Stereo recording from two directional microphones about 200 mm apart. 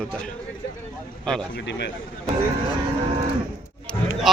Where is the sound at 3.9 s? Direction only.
Centre (ahead or behind).